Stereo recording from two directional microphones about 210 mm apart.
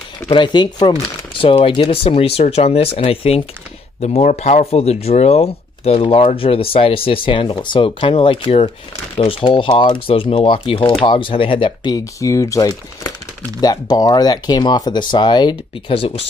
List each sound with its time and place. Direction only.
0.3 s speech: 20° left (ahead or behind)